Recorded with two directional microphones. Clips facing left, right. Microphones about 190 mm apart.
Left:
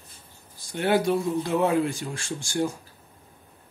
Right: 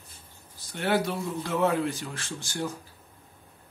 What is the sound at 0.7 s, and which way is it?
A man's voice, 15° left (ahead or behind).